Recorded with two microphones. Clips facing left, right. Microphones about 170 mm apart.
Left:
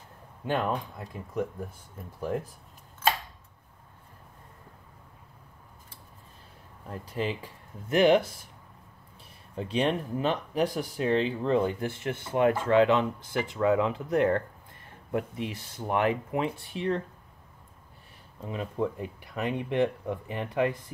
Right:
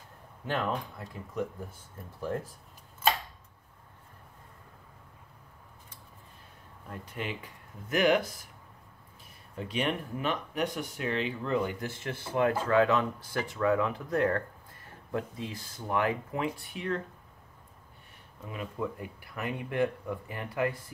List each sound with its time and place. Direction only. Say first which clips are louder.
0.5 s speech: left 3 dB; 20° left (ahead or behind)
6.9 s speech: left 6 dB; 30° left (ahead or behind)
9.6 s speech: left 4 dB; 30° left (ahead or behind)
18.4 s speech: left 5 dB; 30° left (ahead or behind)